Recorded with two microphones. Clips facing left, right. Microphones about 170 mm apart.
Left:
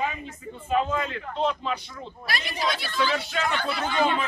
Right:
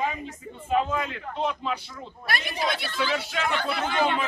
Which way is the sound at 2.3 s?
55° right (ahead or behind).